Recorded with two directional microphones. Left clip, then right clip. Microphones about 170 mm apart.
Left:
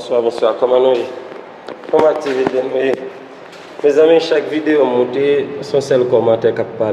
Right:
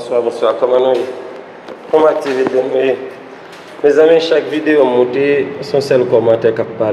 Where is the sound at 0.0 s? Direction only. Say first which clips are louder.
Even; 35° left (ahead or behind).